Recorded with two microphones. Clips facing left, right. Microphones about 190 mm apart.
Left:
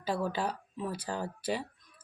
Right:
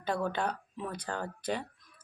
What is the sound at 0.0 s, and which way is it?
Speech, 5° left (ahead or behind).